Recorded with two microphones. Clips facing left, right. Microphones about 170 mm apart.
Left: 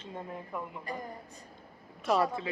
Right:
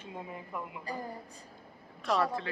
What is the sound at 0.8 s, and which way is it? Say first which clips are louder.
Speech: even; 30° right (ahead or behind).